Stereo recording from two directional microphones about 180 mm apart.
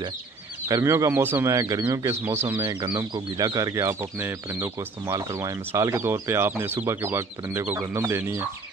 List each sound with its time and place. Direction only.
0.7 s speech: 20° right (ahead or behind)
2.7 s speech: 25° right (ahead or behind)